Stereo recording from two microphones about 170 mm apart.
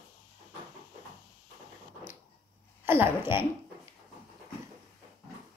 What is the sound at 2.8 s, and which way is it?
Speech, 15° right (ahead or behind).